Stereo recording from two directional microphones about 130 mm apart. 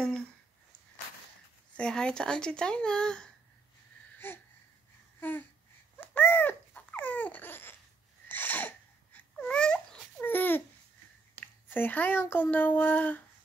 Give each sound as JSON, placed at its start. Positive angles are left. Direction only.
{"t": 1.8, "sound": "speech", "side_deg": 5}
{"t": 4.2, "sound": "speech", "side_deg": 15}
{"t": 5.9, "sound": "babbling", "side_deg": 15}
{"t": 8.3, "sound": "a sound", "side_deg": 15}
{"t": 11.3, "sound": "speech", "side_deg": 15}